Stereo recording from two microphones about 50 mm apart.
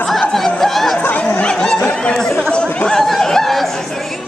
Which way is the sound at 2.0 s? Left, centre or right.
Centre.